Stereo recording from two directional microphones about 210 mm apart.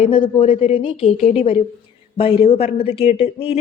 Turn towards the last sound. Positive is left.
turn(degrees=30)  # may be behind; listen again after turning